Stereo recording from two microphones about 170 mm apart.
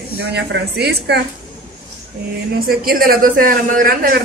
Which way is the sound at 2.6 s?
60° right (ahead or behind).